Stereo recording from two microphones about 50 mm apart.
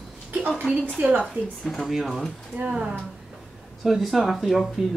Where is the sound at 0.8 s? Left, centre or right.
Right.